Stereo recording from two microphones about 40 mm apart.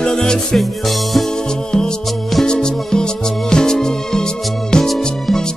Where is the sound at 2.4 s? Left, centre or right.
Centre.